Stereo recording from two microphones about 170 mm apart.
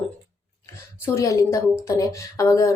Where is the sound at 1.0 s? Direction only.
20° left (ahead or behind).